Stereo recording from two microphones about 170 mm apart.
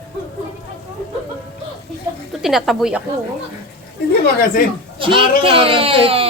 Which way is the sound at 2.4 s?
Centre (ahead or behind).